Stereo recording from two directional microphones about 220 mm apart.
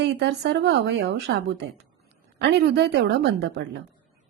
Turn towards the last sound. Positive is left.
turn(degrees=-50)  # may be behind; listen again after turning